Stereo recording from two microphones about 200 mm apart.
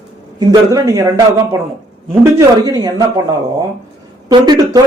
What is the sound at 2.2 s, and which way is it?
Speech, 15° right (ahead or behind).